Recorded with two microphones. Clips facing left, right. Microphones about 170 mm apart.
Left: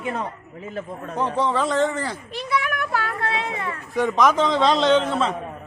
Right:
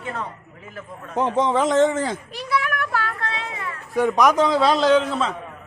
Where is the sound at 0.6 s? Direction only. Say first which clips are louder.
Left 8 dB; 25° left (ahead or behind).